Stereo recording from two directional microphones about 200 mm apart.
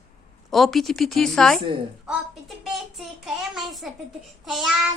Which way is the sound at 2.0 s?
5° right (ahead or behind).